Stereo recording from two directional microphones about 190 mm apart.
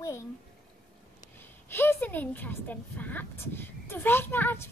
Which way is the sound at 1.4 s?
10° left (ahead or behind).